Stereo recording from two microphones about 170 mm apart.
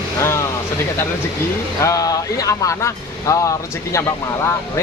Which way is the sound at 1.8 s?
20° left (ahead or behind).